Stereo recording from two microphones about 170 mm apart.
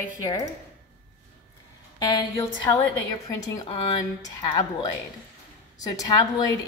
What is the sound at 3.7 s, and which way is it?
A woman's voice, 35° left (ahead or behind).